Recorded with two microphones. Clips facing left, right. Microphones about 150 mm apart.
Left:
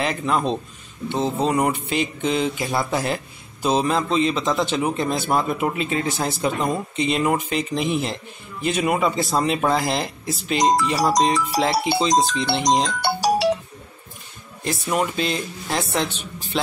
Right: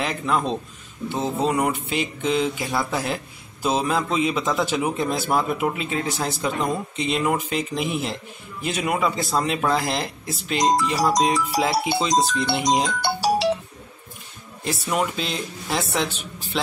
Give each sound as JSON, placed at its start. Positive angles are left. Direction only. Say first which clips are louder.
{"t": 0.0, "sound": "a man's voice", "louder": "left 2 dB", "side_deg": 0}
{"t": 13.0, "sound": "music", "louder": "left 1 dB", "side_deg": 50}
{"t": 14.6, "sound": "a man's voice", "louder": "left 1 dB", "side_deg": 0}